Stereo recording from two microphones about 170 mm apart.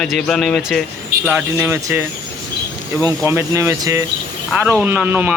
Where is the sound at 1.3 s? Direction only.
10° right (ahead or behind).